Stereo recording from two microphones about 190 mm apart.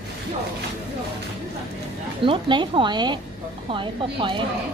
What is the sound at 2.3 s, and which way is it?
A woman's voice, 25° right (ahead or behind).